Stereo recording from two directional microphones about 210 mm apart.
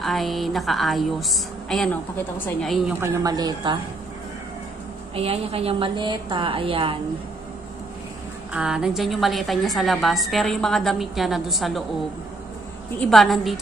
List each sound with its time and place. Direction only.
0.0 s a woman's voice: centre (ahead or behind)
3.0 s a woman's voice: 20° right (ahead or behind)
5.1 s a woman's voice: 30° right (ahead or behind)
8.5 s a woman's voice: 5° right (ahead or behind)
13.0 s a woman's voice: centre (ahead or behind)